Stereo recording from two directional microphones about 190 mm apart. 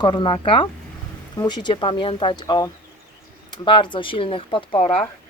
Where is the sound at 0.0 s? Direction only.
25° left (ahead or behind).